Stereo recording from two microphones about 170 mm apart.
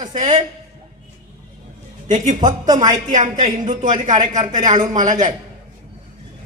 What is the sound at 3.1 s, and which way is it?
Speech, 45° right (ahead or behind).